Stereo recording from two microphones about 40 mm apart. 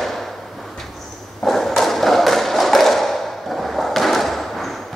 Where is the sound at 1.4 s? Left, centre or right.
Centre.